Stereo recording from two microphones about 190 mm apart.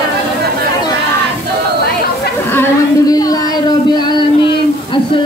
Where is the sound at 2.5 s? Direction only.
15° left (ahead or behind).